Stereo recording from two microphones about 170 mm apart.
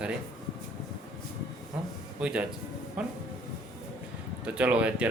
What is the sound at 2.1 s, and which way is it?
Speech, 5° right (ahead or behind).